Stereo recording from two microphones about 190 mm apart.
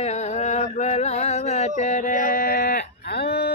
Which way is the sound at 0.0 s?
35° left (ahead or behind).